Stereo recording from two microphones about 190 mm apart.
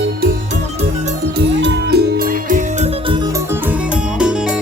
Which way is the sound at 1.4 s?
60° right (ahead or behind).